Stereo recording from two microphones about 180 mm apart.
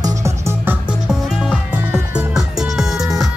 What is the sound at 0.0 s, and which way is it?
Music, 15° right (ahead or behind).